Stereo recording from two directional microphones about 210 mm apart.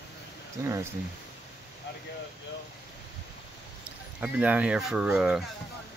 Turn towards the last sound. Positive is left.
turn(degrees=-5)  # may be behind; listen again after turning